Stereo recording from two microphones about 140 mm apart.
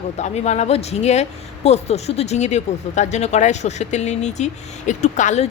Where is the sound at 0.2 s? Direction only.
55° left (ahead or behind).